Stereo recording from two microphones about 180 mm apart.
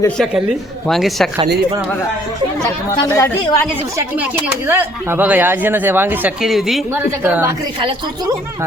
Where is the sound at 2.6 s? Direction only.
20° left (ahead or behind).